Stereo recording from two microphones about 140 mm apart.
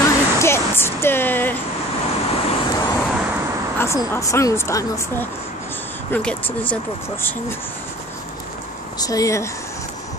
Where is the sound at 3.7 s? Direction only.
20° left (ahead or behind).